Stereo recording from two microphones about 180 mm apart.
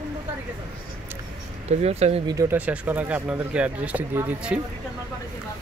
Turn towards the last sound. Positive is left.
turn(degrees=-10)  # may be behind; listen again after turning